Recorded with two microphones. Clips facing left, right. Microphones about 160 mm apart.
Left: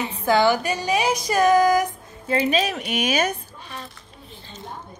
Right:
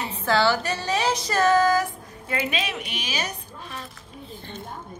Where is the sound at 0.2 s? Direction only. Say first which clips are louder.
Left 3 dB; 15° left (ahead or behind).